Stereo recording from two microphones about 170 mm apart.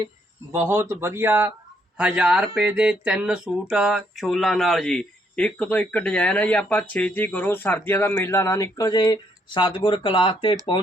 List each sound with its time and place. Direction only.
0.5 s speech: 15° right (ahead or behind)
2.6 s a sound: 5° right (ahead or behind); by 9.1 s 25° left (ahead or behind)
9.8 s speech: 30° left (ahead or behind)